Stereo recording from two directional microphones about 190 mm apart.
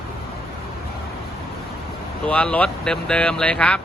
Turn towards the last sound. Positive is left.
turn(degrees=5)  # may be behind; listen again after turning